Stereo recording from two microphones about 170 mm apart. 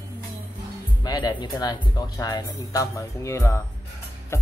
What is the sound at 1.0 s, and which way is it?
Speech, 25° left (ahead or behind).